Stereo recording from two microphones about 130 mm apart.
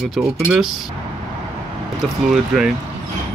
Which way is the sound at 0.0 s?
Centre (ahead or behind).